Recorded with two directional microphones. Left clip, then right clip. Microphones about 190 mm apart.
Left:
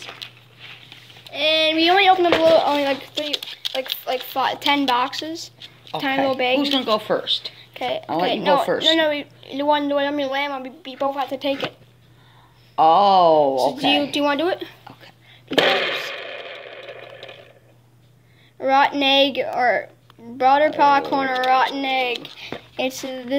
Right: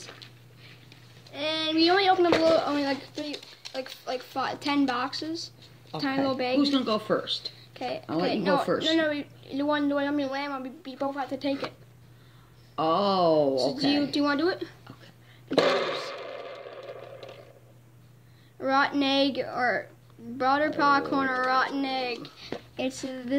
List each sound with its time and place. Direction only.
0.2 s a sound: 65° left (ahead or behind)
1.3 s a sound: 20° right (ahead or behind)
3.7 s a woman's voice: 25° right (ahead or behind)
12.7 s a woman's voice: 25° right (ahead or behind)
15.4 s sewing machine: 5° left (ahead or behind)
18.6 s speech: 30° right (ahead or behind)